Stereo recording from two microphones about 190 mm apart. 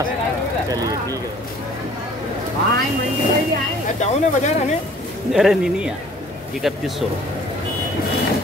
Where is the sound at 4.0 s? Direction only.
35° left (ahead or behind).